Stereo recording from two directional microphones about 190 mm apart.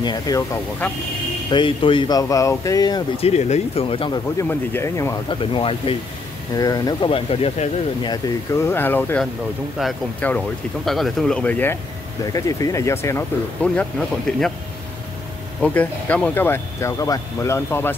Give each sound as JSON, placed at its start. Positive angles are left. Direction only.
{"t": 0.0, "sound": "speech", "side_deg": 20}
{"t": 1.5, "sound": "speech", "side_deg": 25}
{"t": 3.3, "sound": "speech", "side_deg": 35}
{"t": 4.4, "sound": "speech", "side_deg": 15}
{"t": 5.3, "sound": "speech", "side_deg": 25}
{"t": 8.1, "sound": "speech", "side_deg": 15}
{"t": 15.6, "sound": "speech", "side_deg": 10}